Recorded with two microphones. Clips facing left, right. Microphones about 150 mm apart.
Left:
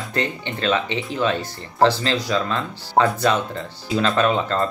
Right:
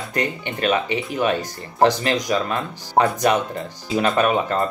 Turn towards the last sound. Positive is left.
turn(degrees=-15)  # may be behind; listen again after turning